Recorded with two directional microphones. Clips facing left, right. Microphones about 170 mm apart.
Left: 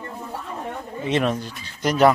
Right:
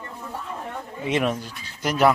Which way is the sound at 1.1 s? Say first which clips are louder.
Left 1 dB; 10° right (ahead or behind).